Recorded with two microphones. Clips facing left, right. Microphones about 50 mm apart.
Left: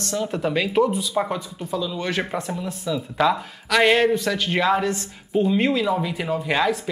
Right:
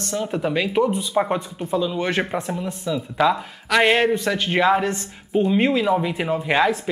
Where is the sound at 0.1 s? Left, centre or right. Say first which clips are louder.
Right 1 dB; centre.